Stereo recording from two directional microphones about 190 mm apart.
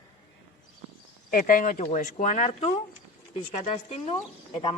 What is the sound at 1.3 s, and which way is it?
Speech, 45° left (ahead or behind).